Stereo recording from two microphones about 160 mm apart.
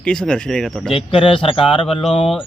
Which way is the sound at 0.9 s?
35° left (ahead or behind).